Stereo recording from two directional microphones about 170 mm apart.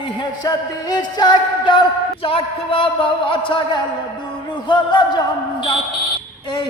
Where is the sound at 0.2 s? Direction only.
25° left (ahead or behind).